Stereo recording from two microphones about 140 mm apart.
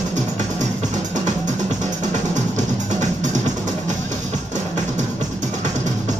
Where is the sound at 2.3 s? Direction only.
60° right (ahead or behind).